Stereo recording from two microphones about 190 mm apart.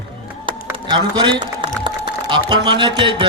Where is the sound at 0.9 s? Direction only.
25° right (ahead or behind).